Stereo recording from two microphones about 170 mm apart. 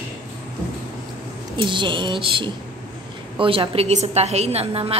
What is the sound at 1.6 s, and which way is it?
A woman's voice, 30° right (ahead or behind).